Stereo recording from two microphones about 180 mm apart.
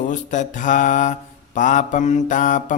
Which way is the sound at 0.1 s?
45° left (ahead or behind).